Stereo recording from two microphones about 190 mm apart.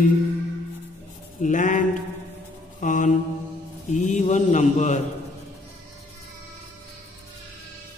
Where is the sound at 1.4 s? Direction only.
40° left (ahead or behind).